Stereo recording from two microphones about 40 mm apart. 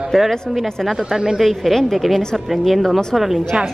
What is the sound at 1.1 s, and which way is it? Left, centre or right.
Speech, centre.